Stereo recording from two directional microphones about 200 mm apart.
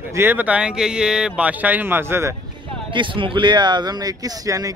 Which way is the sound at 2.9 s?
25° right (ahead or behind).